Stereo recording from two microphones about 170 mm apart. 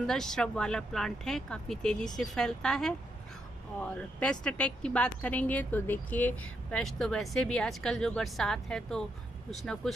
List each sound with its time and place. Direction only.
0.0 s speech: 5° left (ahead or behind)